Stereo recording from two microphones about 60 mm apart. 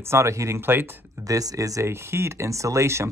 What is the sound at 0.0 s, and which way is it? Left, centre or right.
Speech, right.